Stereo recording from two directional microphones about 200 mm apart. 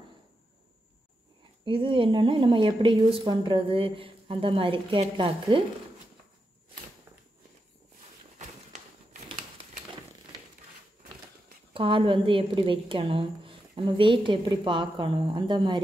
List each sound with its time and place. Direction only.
1.6 s a woman's voice: 25° right (ahead or behind)
11.7 s a woman's voice: 25° right (ahead or behind)